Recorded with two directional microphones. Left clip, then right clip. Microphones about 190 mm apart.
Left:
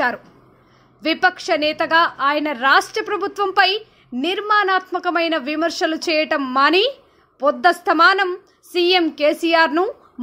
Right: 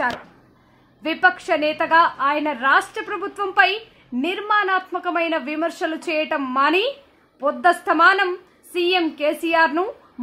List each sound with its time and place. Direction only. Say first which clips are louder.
1.0 s a woman's voice: left 1 dB; 20° left (ahead or behind)